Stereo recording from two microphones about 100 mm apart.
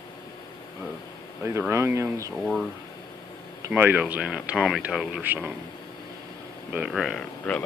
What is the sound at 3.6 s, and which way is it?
Speech, 20° right (ahead or behind).